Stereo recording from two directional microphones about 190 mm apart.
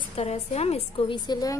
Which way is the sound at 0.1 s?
30° left (ahead or behind).